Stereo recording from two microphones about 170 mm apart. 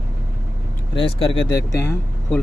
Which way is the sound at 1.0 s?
30° left (ahead or behind).